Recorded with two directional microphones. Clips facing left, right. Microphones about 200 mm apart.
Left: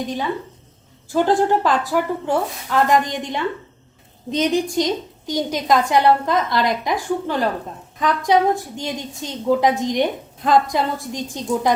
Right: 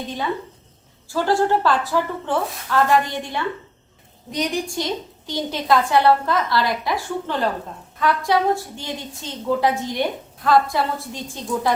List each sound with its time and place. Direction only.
1.0 s a woman's voice: 20° left (ahead or behind)